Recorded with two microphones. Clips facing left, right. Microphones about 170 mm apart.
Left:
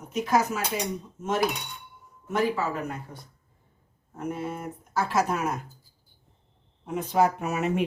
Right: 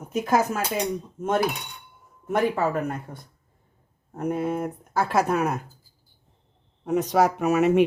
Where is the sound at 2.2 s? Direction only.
55° right (ahead or behind).